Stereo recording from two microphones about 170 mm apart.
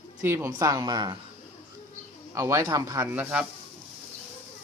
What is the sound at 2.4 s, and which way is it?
Speech, 15° right (ahead or behind).